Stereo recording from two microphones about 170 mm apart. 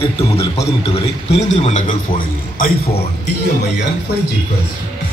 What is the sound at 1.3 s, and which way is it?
A man's voice, 40° left (ahead or behind).